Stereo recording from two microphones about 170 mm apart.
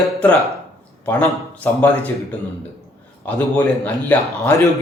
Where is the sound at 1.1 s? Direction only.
10° left (ahead or behind).